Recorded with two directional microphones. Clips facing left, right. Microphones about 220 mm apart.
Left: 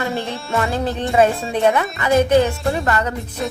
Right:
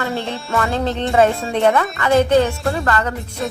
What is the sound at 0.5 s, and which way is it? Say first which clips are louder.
A woman's voice: right 1 dB; 20° left (ahead or behind).